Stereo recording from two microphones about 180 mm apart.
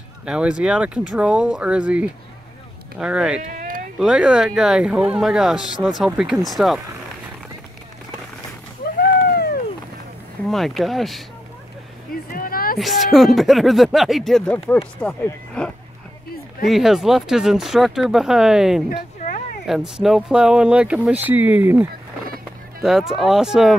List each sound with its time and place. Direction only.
0.2 s speech: 5° right (ahead or behind)
3.4 s cat: 45° right (ahead or behind)
4.0 s speech: 5° right (ahead or behind)
9.3 s a sound: 60° left (ahead or behind)
10.5 s speech: centre (ahead or behind)
12.1 s a sound: 55° left (ahead or behind)
12.7 s speech: centre (ahead or behind)
18.9 s a sound: 45° left (ahead or behind)
19.6 s speech: centre (ahead or behind)